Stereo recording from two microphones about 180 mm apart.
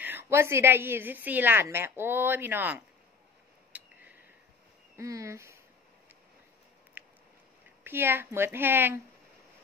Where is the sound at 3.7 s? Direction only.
10° right (ahead or behind).